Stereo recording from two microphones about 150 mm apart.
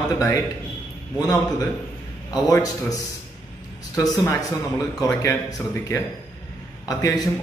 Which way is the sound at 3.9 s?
25° left (ahead or behind).